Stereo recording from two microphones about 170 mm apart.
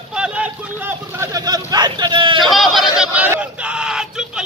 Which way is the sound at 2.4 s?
Centre (ahead or behind).